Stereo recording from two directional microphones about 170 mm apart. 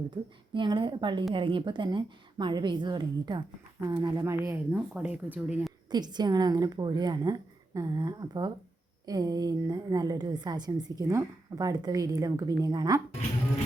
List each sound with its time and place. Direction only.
0.1 s a woman's voice: 25° right (ahead or behind); by 5.7 s 5° right (ahead or behind)
5.9 s a woman's voice: 25° right (ahead or behind)